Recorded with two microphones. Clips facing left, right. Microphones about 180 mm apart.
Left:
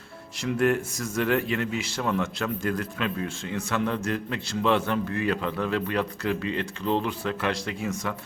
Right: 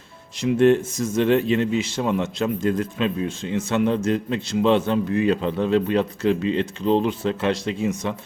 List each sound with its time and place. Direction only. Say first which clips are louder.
0.3 s speech: right 7 dB; 20° right (ahead or behind)